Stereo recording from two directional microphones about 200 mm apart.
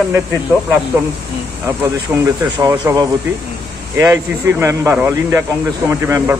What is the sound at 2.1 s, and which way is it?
Speech, 15° right (ahead or behind).